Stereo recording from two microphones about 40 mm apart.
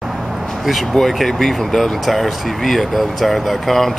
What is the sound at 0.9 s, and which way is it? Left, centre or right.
Speech, centre.